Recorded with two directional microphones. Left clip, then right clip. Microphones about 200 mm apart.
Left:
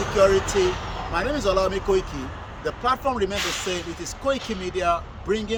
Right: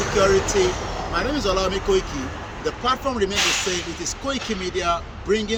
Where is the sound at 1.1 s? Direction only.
25° left (ahead or behind).